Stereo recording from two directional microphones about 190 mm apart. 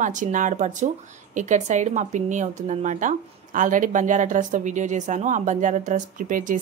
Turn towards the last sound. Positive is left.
turn(degrees=-45)  # may be behind; listen again after turning